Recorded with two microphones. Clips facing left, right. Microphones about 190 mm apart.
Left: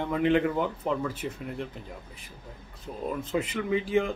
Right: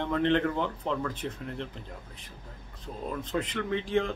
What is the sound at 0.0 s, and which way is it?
Speech, 10° left (ahead or behind).